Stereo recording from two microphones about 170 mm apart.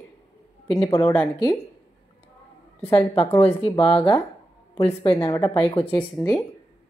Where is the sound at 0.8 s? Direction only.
15° left (ahead or behind).